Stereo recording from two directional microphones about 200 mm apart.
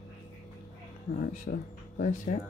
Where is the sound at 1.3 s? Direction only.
40° left (ahead or behind).